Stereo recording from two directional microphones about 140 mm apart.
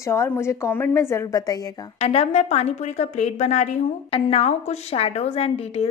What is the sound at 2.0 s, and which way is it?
A woman's voice, 45° left (ahead or behind).